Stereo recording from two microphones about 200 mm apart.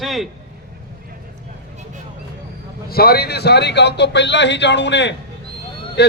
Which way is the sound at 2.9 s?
50° left (ahead or behind).